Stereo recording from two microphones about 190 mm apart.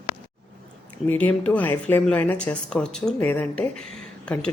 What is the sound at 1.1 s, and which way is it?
Speech, 10° left (ahead or behind).